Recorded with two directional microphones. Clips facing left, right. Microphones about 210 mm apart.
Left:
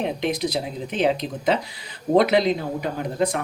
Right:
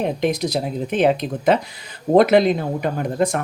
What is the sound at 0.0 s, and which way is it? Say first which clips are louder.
Speech: right 3 dB; 45° right (ahead or behind).